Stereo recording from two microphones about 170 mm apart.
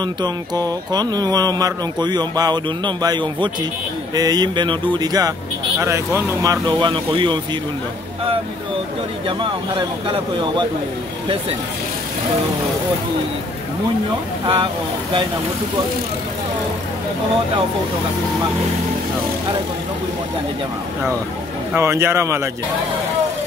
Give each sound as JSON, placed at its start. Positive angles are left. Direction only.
{"t": 0.0, "sound": "speech", "side_deg": -25}
{"t": 9.4, "sound": "speech", "side_deg": -30}
{"t": 14.4, "sound": "speech", "side_deg": -30}
{"t": 21.7, "sound": "speech", "side_deg": -15}